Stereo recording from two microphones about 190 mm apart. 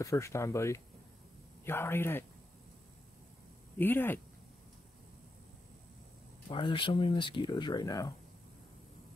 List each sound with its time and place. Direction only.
0.0 s speech: 15° left (ahead or behind)
3.7 s speech: 10° left (ahead or behind)
6.5 s speech: 25° left (ahead or behind)